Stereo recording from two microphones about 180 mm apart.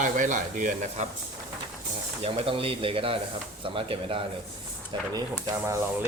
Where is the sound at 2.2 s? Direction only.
30° right (ahead or behind).